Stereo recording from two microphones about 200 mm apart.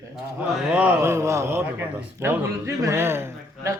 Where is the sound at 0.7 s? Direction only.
10° right (ahead or behind).